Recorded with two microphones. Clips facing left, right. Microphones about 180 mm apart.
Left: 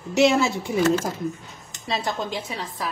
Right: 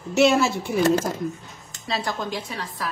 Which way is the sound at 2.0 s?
20° left (ahead or behind).